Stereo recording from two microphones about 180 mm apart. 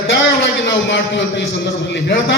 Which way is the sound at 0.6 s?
80° left.